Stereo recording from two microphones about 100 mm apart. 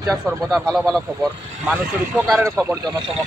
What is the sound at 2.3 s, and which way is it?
Speech, 25° right (ahead or behind).